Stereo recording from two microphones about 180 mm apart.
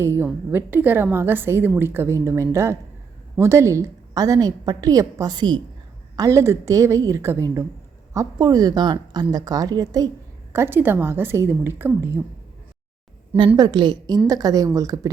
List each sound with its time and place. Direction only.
0.0 s a woman's voice: 15° right (ahead or behind)
13.6 s a woman's voice: 25° right (ahead or behind)